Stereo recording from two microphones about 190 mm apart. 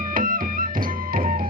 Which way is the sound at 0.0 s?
45° right (ahead or behind).